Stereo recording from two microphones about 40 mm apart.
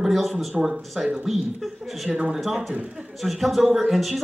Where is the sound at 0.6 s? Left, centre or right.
Right.